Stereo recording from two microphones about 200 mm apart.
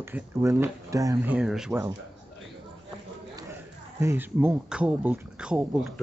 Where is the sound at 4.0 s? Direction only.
10° right (ahead or behind).